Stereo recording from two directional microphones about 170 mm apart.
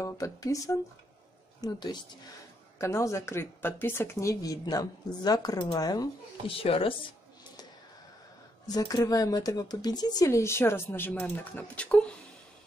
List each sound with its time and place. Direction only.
0.0 s speech: 20° left (ahead or behind)
6.6 s speech: 35° left (ahead or behind)
8.6 s speech: 20° left (ahead or behind); by 12.2 s 5° left (ahead or behind)